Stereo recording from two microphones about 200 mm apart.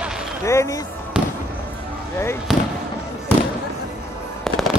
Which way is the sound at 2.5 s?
Centre (ahead or behind).